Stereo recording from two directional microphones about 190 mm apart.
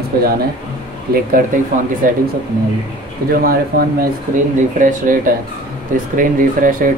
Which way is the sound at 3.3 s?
50° right (ahead or behind).